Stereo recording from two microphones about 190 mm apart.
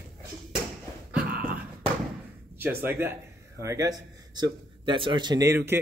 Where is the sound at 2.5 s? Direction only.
10° right (ahead or behind).